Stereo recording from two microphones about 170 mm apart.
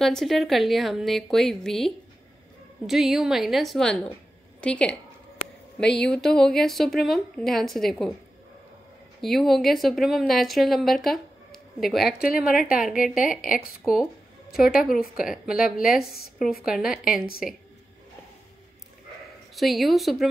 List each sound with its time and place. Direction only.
0.0 s speech: centre (ahead or behind)
2.9 s a woman's voice: centre (ahead or behind)
9.2 s speech: centre (ahead or behind)
12.3 s a woman's voice: 60° left (ahead or behind)
13.1 s speech: 5° right (ahead or behind)
14.5 s a woman's voice: 65° left (ahead or behind)
15.1 s speech: 5° right (ahead or behind)
19.5 s speech: centre (ahead or behind)